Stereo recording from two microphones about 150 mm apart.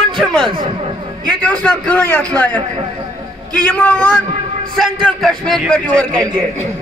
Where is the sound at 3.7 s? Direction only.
10° left (ahead or behind).